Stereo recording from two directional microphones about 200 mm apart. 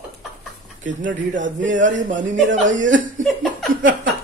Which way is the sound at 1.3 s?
40° right (ahead or behind).